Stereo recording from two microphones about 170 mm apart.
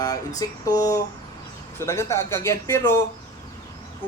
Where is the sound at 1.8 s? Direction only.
15° left (ahead or behind).